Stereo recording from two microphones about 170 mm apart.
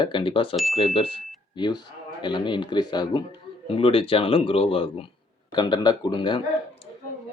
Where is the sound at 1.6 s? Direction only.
25° left (ahead or behind).